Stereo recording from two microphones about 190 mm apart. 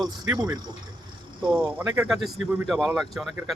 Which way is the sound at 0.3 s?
20° right (ahead or behind).